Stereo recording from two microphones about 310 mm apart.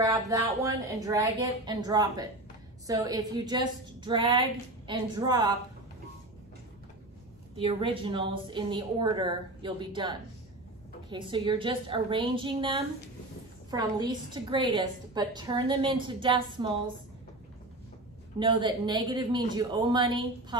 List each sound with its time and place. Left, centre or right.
0.0 s a woman's voice: centre
7.5 s a woman's voice: centre
18.4 s a woman's voice: centre